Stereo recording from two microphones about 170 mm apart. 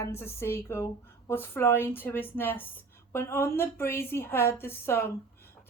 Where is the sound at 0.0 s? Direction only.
15° left (ahead or behind).